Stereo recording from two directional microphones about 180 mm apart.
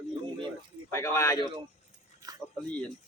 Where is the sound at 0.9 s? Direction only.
15° left (ahead or behind).